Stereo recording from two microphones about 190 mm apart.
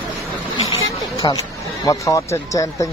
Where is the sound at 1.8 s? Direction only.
15° left (ahead or behind).